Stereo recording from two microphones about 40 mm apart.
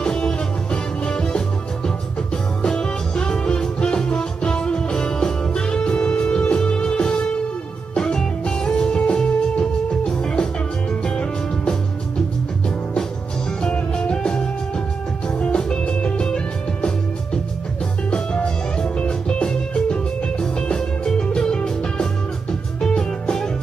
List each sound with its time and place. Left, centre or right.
0.0 s music: left
2.6 s music: left
13.6 s music: left
18.1 s music: left